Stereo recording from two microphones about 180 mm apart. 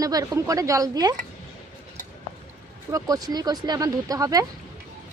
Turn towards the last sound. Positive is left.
turn(degrees=-20)  # may be behind; listen again after turning